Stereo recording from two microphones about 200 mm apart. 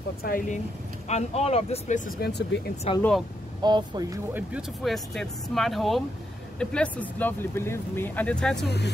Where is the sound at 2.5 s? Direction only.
60° left (ahead or behind).